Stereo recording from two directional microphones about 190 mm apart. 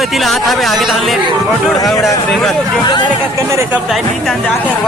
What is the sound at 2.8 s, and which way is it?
Speech, 25° left (ahead or behind).